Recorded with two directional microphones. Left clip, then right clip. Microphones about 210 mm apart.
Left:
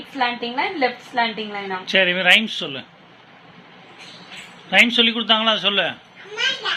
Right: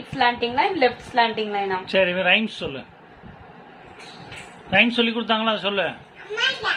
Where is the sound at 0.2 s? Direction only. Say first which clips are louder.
Right 2 dB; 20° right (ahead or behind).